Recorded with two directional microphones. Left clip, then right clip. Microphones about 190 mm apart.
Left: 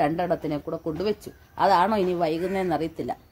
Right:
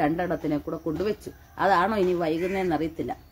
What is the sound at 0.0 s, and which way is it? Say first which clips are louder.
A woman's voice: left 2 dB; 20° left (ahead or behind).